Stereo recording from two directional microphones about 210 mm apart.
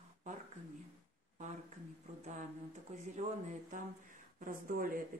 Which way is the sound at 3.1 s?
35° right (ahead or behind).